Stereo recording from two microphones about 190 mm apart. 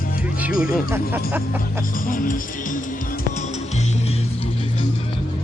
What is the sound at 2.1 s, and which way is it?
Music, 45° left (ahead or behind).